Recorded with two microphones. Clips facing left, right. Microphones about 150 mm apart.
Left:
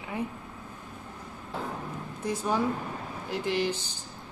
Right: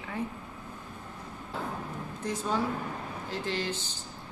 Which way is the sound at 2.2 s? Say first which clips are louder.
Left 2 dB; 10° left (ahead or behind).